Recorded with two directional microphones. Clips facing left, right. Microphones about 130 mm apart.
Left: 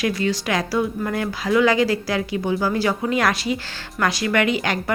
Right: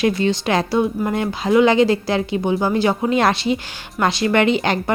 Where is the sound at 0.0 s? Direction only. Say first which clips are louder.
Right 4 dB; 25° right (ahead or behind).